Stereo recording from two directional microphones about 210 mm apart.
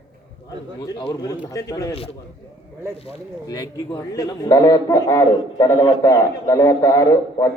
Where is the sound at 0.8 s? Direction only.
15° left (ahead or behind).